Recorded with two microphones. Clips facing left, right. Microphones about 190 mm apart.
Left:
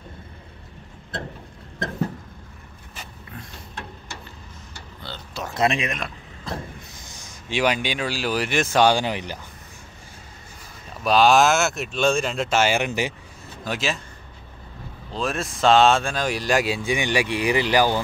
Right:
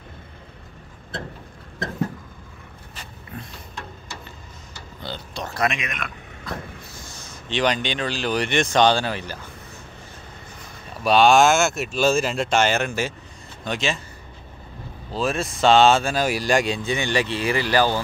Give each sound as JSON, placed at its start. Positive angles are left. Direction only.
{"t": 5.1, "sound": "a sound", "side_deg": -15}
{"t": 5.5, "sound": "speech", "side_deg": 30}
{"t": 7.4, "sound": "speech", "side_deg": 10}
{"t": 11.1, "sound": "speech", "side_deg": 0}
{"t": 13.7, "sound": "speech", "side_deg": 5}
{"t": 15.1, "sound": "speech", "side_deg": 0}